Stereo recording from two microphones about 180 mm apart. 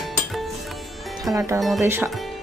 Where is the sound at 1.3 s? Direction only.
20° right (ahead or behind).